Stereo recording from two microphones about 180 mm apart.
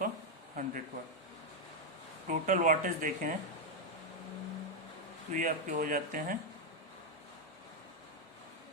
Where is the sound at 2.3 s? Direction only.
45° right (ahead or behind).